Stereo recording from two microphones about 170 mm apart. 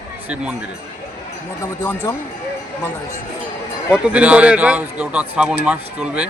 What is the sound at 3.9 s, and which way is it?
A man's voice, 5° right (ahead or behind).